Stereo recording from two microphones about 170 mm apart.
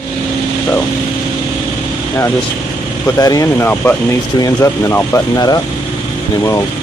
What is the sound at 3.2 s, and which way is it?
Speech, 20° left (ahead or behind).